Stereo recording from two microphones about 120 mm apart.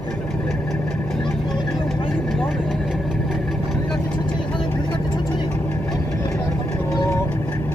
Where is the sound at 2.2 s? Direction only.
Centre (ahead or behind).